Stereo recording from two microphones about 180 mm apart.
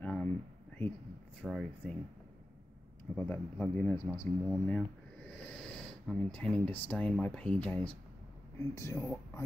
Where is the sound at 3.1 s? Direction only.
5° left (ahead or behind).